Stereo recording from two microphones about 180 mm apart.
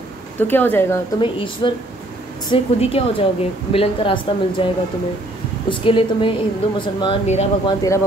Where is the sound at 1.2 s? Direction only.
25° left (ahead or behind).